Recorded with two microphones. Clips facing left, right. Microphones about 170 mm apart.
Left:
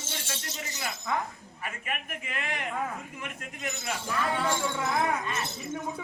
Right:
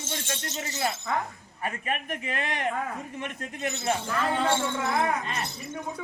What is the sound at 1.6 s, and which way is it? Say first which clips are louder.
Speech: right 6 dB; 35° right (ahead or behind).